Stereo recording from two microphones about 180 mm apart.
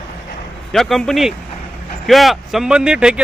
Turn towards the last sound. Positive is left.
turn(degrees=-5)  # may be behind; listen again after turning